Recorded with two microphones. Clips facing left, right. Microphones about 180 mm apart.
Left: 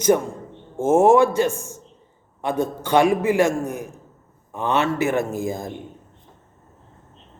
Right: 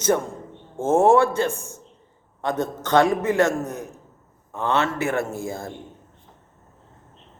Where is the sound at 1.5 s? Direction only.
35° right (ahead or behind).